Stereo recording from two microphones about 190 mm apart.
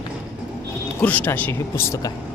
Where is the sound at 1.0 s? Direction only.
10° left (ahead or behind).